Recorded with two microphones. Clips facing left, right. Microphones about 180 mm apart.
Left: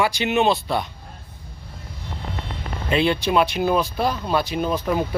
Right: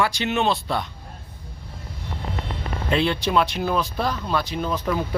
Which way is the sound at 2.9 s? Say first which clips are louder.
Left 2 dB; 5° left (ahead or behind).